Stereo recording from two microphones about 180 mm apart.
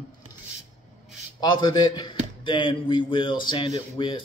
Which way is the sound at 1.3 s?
25° left (ahead or behind).